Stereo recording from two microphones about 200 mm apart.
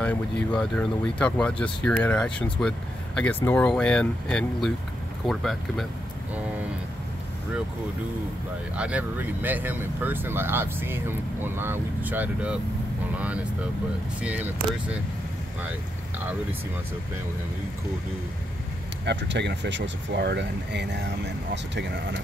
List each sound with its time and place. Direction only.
0.0 s speech: 5° left (ahead or behind)
8.7 s speech: 5° right (ahead or behind)
14.2 s speech: 5° right (ahead or behind)
19.0 s speech: 60° right (ahead or behind)